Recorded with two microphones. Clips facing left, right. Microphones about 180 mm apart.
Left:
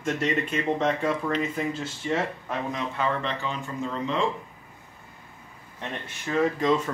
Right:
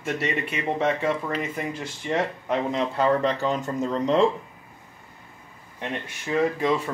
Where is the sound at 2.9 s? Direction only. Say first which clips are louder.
Right 8 dB; 40° right (ahead or behind).